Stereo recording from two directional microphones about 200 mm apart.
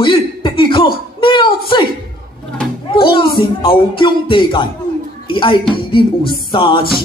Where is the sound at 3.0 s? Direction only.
25° left (ahead or behind).